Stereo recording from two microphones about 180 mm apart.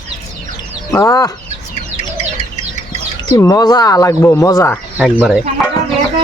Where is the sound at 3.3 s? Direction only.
20° left (ahead or behind).